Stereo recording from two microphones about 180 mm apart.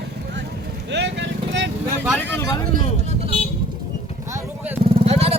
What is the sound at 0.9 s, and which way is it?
Vehicle, 80° right.